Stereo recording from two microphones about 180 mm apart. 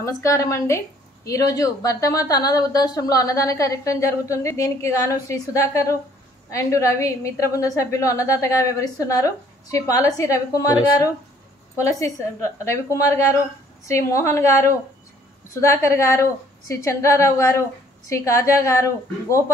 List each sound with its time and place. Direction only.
0.2 s a woman's voice: 15° left (ahead or behind)